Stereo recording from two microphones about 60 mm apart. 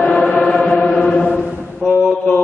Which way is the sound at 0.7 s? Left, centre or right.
Left.